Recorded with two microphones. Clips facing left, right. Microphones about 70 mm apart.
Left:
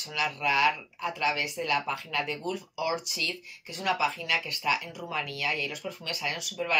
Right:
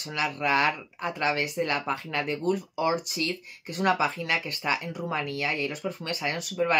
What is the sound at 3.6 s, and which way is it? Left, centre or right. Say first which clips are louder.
Speech: right 4 dB; right.